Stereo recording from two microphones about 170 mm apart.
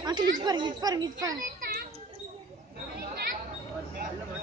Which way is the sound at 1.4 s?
65° right (ahead or behind).